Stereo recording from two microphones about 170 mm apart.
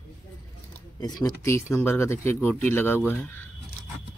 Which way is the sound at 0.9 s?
20° left (ahead or behind).